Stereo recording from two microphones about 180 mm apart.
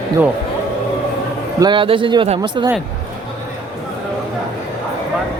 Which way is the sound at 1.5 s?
25° right (ahead or behind).